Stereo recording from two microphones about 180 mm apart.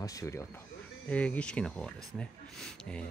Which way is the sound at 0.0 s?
15° left (ahead or behind).